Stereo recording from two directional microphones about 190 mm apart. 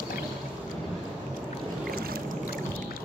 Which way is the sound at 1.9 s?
50° right (ahead or behind).